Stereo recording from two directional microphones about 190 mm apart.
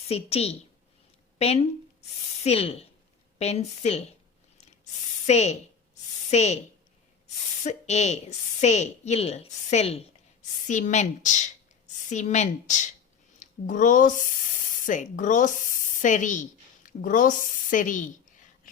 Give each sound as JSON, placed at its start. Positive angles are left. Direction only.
{"t": 0.1, "sound": "a woman's voice", "side_deg": 35}
{"t": 5.2, "sound": "a sound", "side_deg": 35}
{"t": 7.6, "sound": "a woman's voice", "side_deg": 35}